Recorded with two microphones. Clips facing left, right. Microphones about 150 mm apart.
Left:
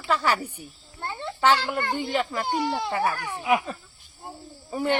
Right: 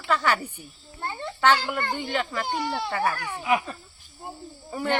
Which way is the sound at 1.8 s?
10° left (ahead or behind).